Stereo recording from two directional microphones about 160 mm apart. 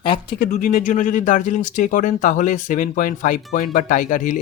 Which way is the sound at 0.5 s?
50° left (ahead or behind).